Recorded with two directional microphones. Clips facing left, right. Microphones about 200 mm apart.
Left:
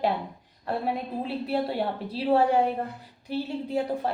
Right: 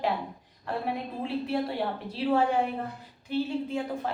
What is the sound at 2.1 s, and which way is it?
Speech, 35° left (ahead or behind).